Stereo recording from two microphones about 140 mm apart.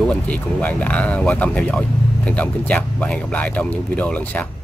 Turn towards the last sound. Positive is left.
turn(degrees=10)  # may be behind; listen again after turning